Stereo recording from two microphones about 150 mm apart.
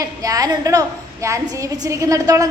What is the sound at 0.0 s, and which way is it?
A woman's voice, 25° right (ahead or behind).